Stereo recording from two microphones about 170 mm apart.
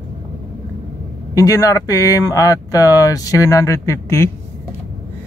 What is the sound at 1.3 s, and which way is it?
Speech, 20° left (ahead or behind).